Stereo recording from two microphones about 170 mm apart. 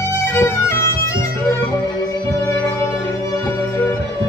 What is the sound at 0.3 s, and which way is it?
Music, 15° left (ahead or behind).